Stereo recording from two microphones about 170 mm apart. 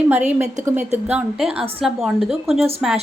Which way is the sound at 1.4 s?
35° right (ahead or behind).